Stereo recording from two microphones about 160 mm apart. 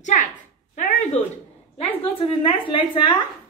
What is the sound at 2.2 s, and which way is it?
A woman's voice, 35° left (ahead or behind).